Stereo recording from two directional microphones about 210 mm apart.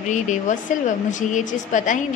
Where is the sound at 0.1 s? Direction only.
35° left (ahead or behind).